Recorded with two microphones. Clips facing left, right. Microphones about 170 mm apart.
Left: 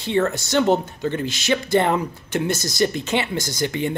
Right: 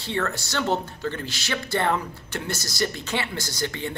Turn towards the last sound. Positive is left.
turn(degrees=15)  # may be behind; listen again after turning